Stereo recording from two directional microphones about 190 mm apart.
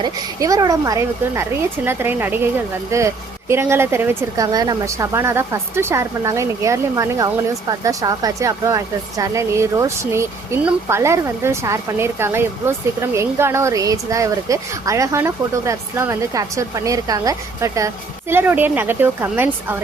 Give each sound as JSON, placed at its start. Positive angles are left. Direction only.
{"t": 0.0, "sound": "speech", "side_deg": -15}